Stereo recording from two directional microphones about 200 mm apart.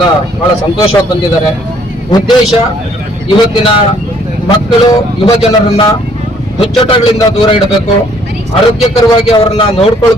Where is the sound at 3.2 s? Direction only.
25° left (ahead or behind).